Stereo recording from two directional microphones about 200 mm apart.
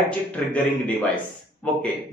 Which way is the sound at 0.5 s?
5° left (ahead or behind).